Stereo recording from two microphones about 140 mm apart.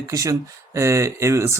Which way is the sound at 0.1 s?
25° right (ahead or behind).